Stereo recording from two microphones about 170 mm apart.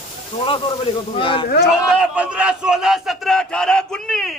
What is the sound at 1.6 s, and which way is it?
A man's voice, 5° right (ahead or behind).